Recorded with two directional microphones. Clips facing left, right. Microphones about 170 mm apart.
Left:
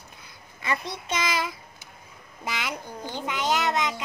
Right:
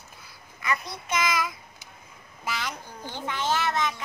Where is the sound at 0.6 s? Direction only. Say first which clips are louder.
Even; 25° left (ahead or behind).